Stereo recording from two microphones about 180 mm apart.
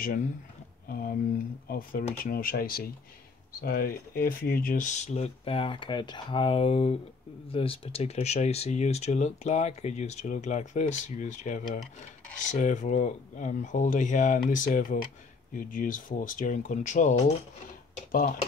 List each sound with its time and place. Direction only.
0.0 s speech: 50° left (ahead or behind)